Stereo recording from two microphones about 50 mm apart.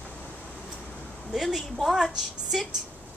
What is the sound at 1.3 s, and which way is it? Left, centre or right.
A woman's voice, centre.